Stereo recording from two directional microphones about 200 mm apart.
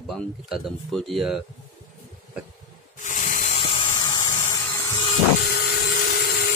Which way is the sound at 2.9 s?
40° left (ahead or behind).